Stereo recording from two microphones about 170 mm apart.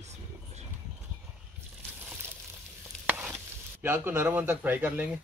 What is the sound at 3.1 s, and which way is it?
Stir, 10° right (ahead or behind).